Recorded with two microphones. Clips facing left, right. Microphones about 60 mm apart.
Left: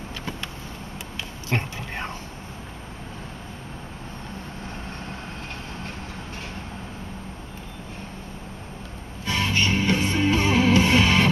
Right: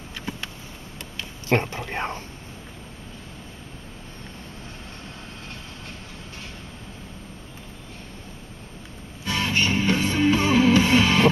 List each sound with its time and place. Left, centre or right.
1.5 s speech: right
9.2 s music: left